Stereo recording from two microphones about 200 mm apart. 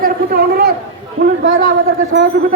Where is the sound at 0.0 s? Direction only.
50° right (ahead or behind).